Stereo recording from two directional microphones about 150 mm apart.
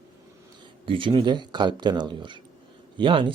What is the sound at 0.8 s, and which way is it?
Speech, 35° right (ahead or behind).